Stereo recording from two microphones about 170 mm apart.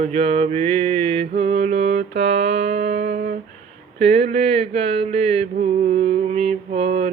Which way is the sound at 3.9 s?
35° right (ahead or behind).